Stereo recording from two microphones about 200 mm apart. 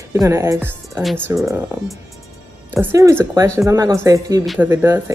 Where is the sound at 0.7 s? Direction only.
5° left (ahead or behind).